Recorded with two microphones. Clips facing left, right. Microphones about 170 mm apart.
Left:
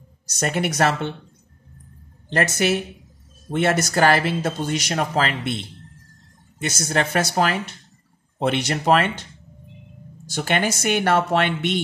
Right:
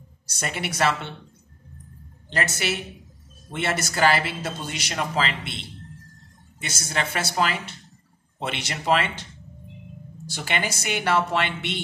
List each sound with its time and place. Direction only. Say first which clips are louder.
0.3 s speech: left 7 dB; 45° left (ahead or behind)
3.5 s speech: left 7 dB; 45° left (ahead or behind)
6.6 s speech: left 6 dB; 45° left (ahead or behind)
10.3 s speech: left 6 dB; 50° left (ahead or behind)